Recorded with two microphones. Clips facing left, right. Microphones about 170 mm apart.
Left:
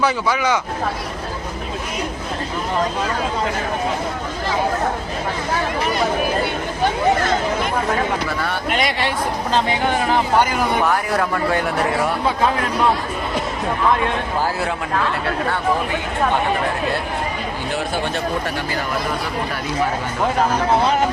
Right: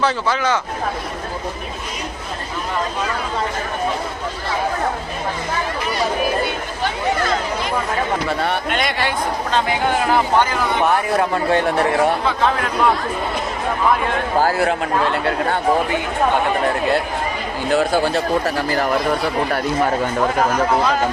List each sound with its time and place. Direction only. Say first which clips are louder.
0.0 s speech: even; 10° left (ahead or behind)
8.3 s speech: right 3 dB; 25° right (ahead or behind)
10.8 s speech: right 2 dB; 25° right (ahead or behind)
17.9 s speech: right 5 dB; 35° right (ahead or behind)
20.5 s speech: even; 30° left (ahead or behind)